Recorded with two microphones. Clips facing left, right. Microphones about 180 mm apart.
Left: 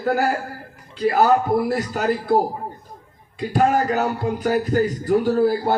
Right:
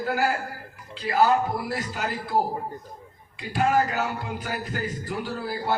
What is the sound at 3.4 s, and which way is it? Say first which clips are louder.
A man's voice: left 4 dB; 45° left (ahead or behind).